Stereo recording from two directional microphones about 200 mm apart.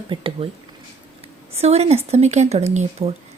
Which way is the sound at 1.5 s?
30° right (ahead or behind).